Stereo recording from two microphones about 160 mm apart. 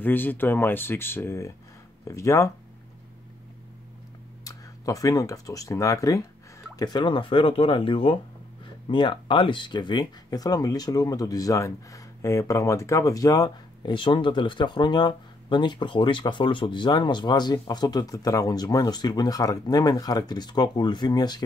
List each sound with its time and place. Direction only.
0.0 s speech: 10° left (ahead or behind)
4.5 s speech: 20° left (ahead or behind)